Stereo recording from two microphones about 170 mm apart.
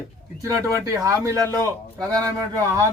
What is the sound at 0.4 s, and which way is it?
Speech, 20° right (ahead or behind).